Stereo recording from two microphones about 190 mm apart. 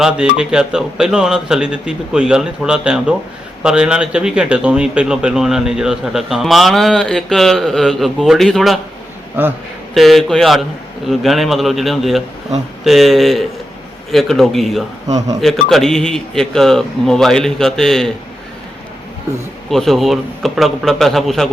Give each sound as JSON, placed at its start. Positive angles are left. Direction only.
{"t": 0.0, "sound": "a man's voice", "side_deg": -5}
{"t": 9.4, "sound": "a man's voice", "side_deg": -10}
{"t": 9.9, "sound": "a man's voice", "side_deg": 0}
{"t": 15.0, "sound": "speech", "side_deg": -20}
{"t": 15.4, "sound": "a man's voice", "side_deg": 0}
{"t": 19.7, "sound": "a man's voice", "side_deg": 0}